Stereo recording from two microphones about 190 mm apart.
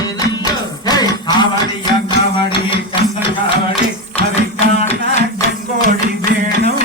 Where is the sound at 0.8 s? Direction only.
20° left (ahead or behind).